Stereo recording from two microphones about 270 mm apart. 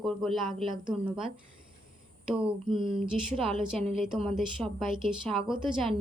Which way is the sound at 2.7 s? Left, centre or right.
Centre.